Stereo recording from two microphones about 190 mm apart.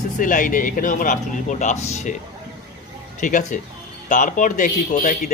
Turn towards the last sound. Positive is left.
turn(degrees=40)  # may be behind; listen again after turning